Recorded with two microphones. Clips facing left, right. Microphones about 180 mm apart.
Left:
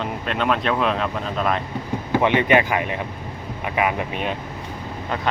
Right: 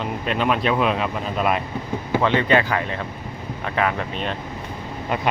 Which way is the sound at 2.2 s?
15° left (ahead or behind).